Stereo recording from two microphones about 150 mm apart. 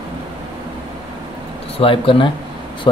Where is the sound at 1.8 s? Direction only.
35° left (ahead or behind).